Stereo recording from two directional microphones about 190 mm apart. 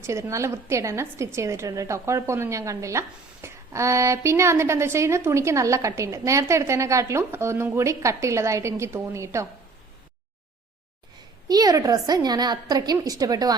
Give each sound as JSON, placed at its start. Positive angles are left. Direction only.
{"t": 0.0, "sound": "a woman's voice", "side_deg": -15}
{"t": 11.4, "sound": "a woman's voice", "side_deg": -20}